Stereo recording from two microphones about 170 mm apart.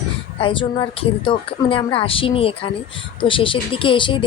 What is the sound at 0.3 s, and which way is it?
A woman's voice, 30° left (ahead or behind).